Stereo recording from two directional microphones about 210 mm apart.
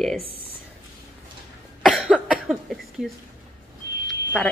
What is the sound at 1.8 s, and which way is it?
Cough, centre (ahead or behind).